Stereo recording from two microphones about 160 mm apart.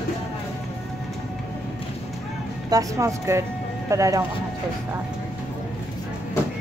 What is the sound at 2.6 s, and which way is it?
Speech, 20° right (ahead or behind).